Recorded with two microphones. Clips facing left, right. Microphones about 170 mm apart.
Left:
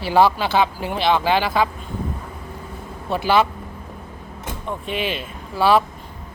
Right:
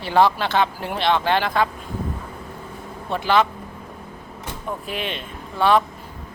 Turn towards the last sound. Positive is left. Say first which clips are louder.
# left 1 dB
turn(degrees=5)  # may be behind; listen again after turning